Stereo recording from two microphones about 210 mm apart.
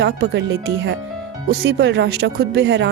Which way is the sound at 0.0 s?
55° right (ahead or behind).